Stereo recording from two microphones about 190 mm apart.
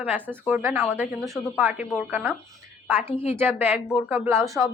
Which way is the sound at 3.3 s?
10° right (ahead or behind).